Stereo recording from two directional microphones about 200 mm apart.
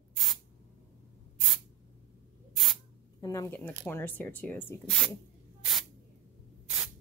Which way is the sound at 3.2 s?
15° left (ahead or behind).